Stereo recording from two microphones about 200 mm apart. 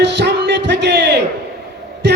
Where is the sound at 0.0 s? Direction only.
60° right (ahead or behind).